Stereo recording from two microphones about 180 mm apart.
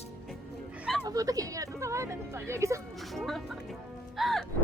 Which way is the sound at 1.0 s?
20° right (ahead or behind).